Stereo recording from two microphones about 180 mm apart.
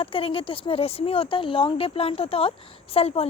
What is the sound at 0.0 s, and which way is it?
A woman's voice, 30° left (ahead or behind).